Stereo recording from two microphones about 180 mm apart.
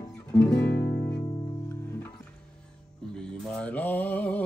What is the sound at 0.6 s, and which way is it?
Music, 60° left (ahead or behind).